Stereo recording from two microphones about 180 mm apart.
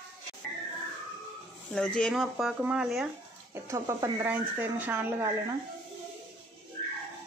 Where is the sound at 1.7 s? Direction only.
5° left (ahead or behind).